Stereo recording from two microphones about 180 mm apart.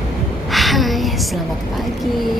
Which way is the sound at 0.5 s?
Centre (ahead or behind).